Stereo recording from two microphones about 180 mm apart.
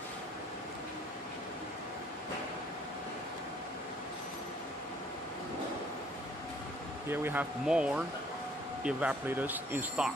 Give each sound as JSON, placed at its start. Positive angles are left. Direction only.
{"t": 7.1, "sound": "speech", "side_deg": -10}